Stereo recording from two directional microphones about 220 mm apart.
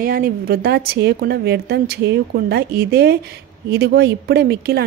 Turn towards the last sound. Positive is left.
turn(degrees=-50)  # may be behind; listen again after turning